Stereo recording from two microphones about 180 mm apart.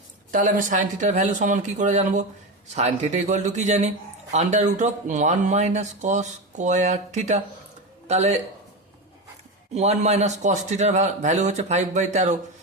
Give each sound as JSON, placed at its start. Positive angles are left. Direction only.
{"t": 0.3, "sound": "a man's voice", "side_deg": -50}
{"t": 9.7, "sound": "speech", "side_deg": -40}